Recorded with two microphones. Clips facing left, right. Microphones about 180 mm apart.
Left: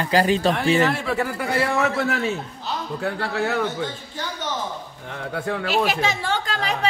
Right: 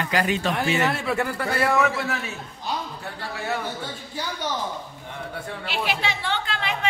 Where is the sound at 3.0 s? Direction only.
70° left (ahead or behind).